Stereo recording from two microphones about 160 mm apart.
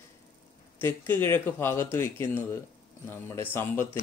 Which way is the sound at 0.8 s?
15° left (ahead or behind).